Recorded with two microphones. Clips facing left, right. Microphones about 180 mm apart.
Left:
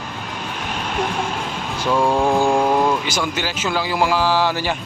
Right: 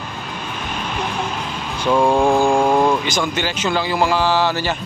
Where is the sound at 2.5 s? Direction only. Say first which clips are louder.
Right 2 dB; 10° right (ahead or behind).